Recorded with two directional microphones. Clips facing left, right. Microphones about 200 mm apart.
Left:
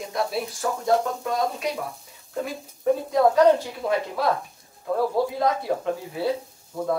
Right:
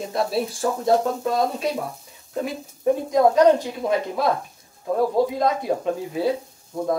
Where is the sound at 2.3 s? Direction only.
20° right (ahead or behind).